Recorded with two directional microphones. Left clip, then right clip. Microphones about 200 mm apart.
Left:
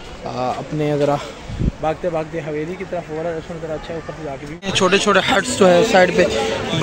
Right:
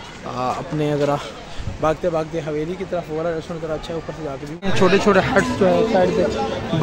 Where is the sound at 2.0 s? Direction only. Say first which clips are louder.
Even; 10° right (ahead or behind).